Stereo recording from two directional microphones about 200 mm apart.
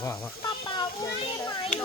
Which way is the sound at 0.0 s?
20° left (ahead or behind).